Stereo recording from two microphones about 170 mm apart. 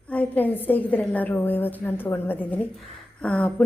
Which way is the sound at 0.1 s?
10° left (ahead or behind).